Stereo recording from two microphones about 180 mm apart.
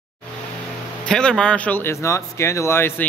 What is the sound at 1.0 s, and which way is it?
A man's voice, 5° left (ahead or behind).